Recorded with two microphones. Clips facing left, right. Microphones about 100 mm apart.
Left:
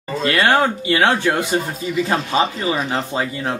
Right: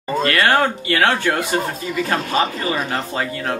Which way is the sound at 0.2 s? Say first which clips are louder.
Left 1 dB; 20° left (ahead or behind).